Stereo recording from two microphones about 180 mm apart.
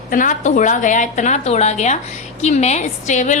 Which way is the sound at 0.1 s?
45° left (ahead or behind).